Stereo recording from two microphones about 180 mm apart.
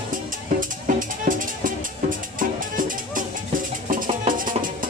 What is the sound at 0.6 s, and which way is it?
Music, 45° right (ahead or behind).